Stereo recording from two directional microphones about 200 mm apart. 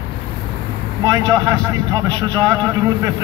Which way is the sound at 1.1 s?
15° right (ahead or behind).